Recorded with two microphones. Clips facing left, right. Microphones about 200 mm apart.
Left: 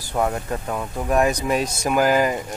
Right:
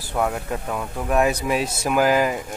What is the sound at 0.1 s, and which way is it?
Speech, centre (ahead or behind).